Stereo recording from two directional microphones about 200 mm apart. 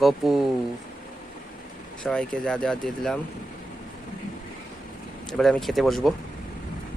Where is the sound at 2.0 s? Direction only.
5° left (ahead or behind).